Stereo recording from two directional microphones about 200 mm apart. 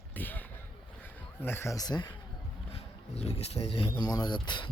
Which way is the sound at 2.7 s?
30° left (ahead or behind).